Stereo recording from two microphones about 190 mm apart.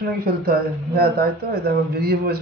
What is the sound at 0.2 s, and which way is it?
Speech, 55° right (ahead or behind).